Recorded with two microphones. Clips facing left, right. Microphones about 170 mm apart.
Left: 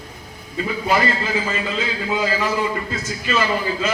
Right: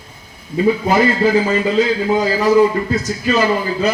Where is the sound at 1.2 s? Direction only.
40° right (ahead or behind).